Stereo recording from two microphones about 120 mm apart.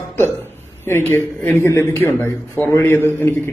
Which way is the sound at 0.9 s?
20° left (ahead or behind).